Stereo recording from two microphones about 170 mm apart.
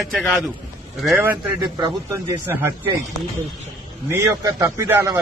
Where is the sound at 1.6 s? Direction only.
25° right (ahead or behind).